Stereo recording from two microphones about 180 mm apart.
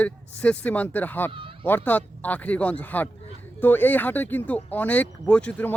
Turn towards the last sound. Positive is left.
turn(degrees=10)  # may be behind; listen again after turning